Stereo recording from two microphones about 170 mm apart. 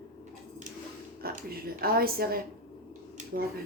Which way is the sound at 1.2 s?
60° right (ahead or behind).